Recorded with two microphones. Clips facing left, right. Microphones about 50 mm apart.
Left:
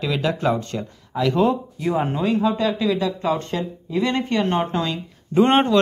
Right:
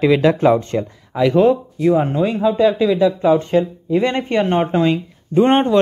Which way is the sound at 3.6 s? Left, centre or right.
Right.